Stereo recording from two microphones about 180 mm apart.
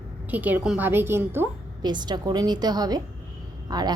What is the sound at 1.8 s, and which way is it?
A woman's voice, 25° right (ahead or behind).